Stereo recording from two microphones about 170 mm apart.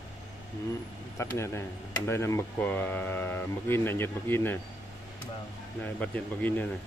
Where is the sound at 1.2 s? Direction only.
15° left (ahead or behind).